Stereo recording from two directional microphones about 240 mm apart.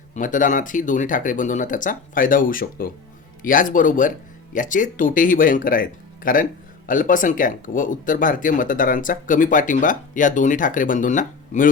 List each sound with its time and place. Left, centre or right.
0.1 s speech: left